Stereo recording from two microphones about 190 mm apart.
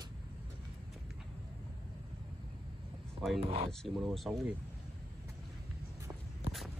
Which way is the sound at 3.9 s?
Centre (ahead or behind).